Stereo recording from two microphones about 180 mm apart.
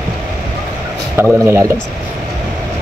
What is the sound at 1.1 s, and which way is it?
Speech, 15° right (ahead or behind).